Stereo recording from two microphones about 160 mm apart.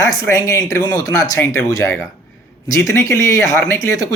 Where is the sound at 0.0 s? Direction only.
20° left (ahead or behind).